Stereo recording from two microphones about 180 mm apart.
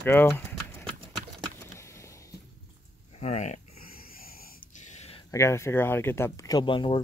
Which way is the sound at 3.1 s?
40° left (ahead or behind).